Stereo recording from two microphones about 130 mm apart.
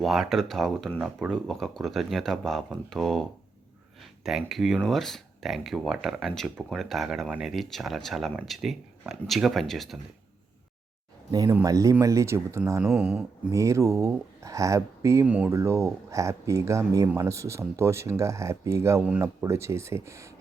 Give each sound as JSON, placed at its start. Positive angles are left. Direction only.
{"t": 0.0, "sound": "speech", "side_deg": 0}
{"t": 11.3, "sound": "speech", "side_deg": -30}
{"t": 15.3, "sound": "speech", "side_deg": -10}
{"t": 15.5, "sound": "speech", "side_deg": -20}